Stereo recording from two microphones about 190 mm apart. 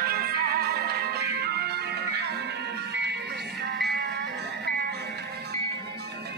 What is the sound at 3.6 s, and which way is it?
Music, 60° right (ahead or behind).